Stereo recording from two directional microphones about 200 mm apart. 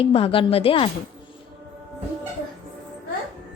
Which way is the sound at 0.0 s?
25° left (ahead or behind).